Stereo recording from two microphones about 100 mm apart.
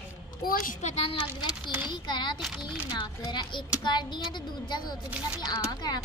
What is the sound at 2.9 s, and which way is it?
A woman's voice, 50° left (ahead or behind).